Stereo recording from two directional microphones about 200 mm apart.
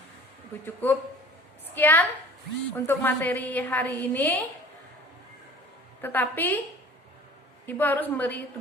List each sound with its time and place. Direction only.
0.6 s a woman's voice: 10° left (ahead or behind)
6.0 s a woman's voice: 10° left (ahead or behind)
7.7 s a woman's voice: 10° left (ahead or behind)